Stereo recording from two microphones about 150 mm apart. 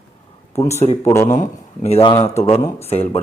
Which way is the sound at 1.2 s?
55° left (ahead or behind).